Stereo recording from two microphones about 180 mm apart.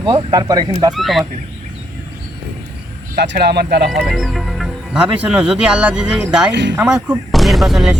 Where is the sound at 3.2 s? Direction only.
65° right (ahead or behind).